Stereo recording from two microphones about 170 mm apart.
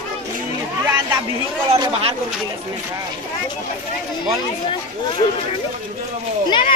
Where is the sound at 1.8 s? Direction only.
30° right (ahead or behind).